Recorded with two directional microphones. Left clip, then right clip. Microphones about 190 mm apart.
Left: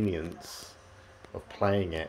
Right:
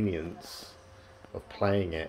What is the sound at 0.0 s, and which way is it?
Speech, 15° left (ahead or behind).